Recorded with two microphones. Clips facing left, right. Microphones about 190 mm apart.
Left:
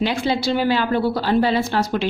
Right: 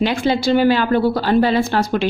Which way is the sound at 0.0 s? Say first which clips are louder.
Right 3 dB; 50° right (ahead or behind).